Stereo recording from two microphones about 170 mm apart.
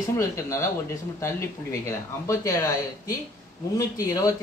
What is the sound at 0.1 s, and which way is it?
Speech, 15° left (ahead or behind).